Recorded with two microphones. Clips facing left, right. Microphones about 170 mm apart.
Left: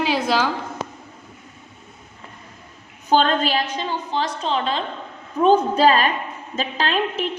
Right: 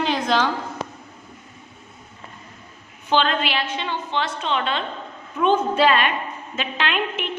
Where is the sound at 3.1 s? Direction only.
40° left (ahead or behind).